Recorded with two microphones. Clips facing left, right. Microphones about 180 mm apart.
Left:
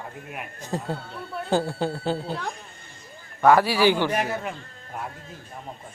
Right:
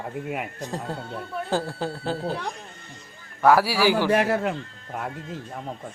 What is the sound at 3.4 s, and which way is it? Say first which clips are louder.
Speech: left 1 dB; 5° right (ahead or behind).